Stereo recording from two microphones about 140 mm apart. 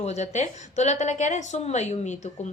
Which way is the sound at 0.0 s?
55° left (ahead or behind).